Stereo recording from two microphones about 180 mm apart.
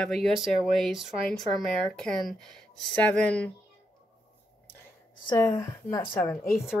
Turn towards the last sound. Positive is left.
turn(degrees=-5)  # may be behind; listen again after turning